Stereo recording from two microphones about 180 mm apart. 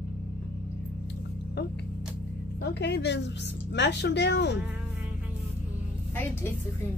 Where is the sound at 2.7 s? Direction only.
70° left (ahead or behind).